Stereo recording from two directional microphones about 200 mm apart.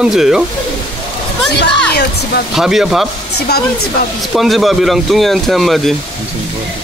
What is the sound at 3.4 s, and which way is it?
Speech, 55° left (ahead or behind).